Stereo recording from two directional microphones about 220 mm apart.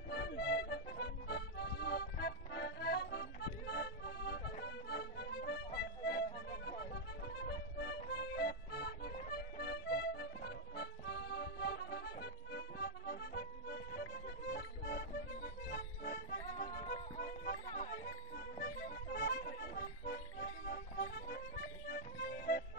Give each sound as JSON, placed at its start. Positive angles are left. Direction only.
{"t": 0.1, "sound": "accordion", "side_deg": 50}
{"t": 5.8, "sound": "music", "side_deg": 50}
{"t": 17.7, "sound": "accordion", "side_deg": 40}
{"t": 21.8, "sound": "music", "side_deg": 45}